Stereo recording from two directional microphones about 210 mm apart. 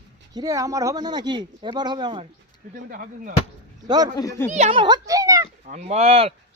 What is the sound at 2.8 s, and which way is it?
Speech, 40° right (ahead or behind).